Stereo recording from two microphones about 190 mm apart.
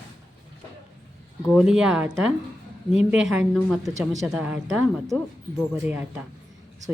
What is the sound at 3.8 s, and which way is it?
Speech, 15° right (ahead or behind).